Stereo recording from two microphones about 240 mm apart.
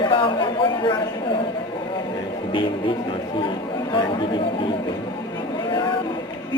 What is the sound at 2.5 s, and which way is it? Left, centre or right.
Music, left.